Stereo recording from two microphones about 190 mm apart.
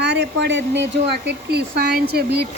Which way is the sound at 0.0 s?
65° right (ahead or behind).